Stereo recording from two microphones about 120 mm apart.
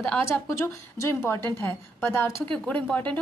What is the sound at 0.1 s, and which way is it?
A woman's voice, 20° left (ahead or behind).